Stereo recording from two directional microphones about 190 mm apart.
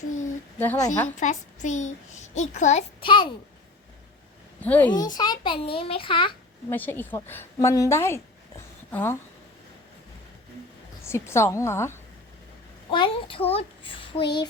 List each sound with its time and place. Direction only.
0.6 s a woman's voice: 10° left (ahead or behind)
1.1 s a child's voice: 40° left (ahead or behind); by 3.3 s 25° left (ahead or behind)
4.6 s a woman's voice: 10° left (ahead or behind)
4.9 s a child's voice: 20° left (ahead or behind)
6.7 s a woman's voice: 10° left (ahead or behind)
11.1 s a woman's voice: 15° left (ahead or behind)
12.9 s a child's voice: 25° left (ahead or behind)